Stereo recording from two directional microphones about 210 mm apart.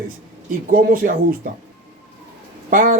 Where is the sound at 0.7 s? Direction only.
40° right (ahead or behind).